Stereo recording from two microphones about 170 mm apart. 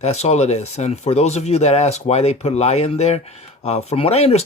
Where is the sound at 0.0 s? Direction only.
40° left (ahead or behind).